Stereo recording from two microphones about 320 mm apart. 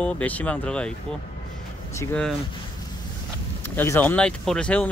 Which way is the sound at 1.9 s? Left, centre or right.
Centre.